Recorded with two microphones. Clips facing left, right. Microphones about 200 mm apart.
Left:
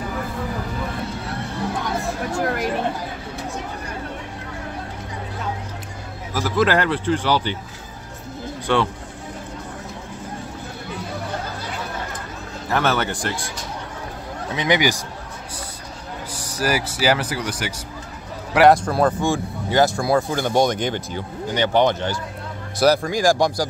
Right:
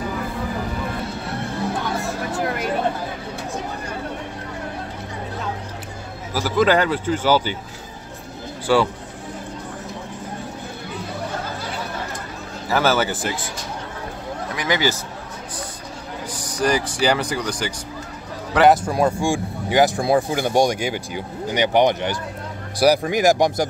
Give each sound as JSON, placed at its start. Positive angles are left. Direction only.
{"t": 2.3, "sound": "speech", "side_deg": 0}
{"t": 6.3, "sound": "speech", "side_deg": 0}
{"t": 8.7, "sound": "speech", "side_deg": -5}
{"t": 12.6, "sound": "speech", "side_deg": 0}
{"t": 14.5, "sound": "speech", "side_deg": 20}
{"t": 16.3, "sound": "a man's voice", "side_deg": 10}
{"t": 18.9, "sound": "speech", "side_deg": -10}